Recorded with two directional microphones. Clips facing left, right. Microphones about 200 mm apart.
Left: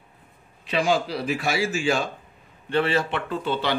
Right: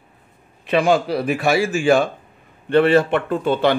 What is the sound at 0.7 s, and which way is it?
Speech, 55° right (ahead or behind).